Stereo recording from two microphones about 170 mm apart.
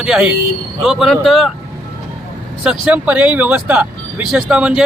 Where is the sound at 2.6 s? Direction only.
5° right (ahead or behind).